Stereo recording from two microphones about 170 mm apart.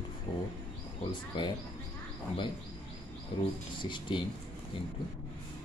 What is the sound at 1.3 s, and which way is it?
Speech, 25° left (ahead or behind).